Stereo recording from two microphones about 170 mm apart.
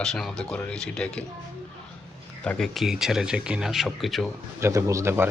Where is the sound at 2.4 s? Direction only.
5° left (ahead or behind).